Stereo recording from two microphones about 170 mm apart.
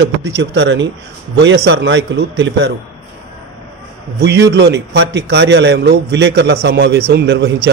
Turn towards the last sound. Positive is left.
turn(degrees=-80)